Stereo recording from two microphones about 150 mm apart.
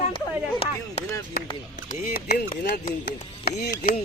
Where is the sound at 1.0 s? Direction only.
45° left (ahead or behind).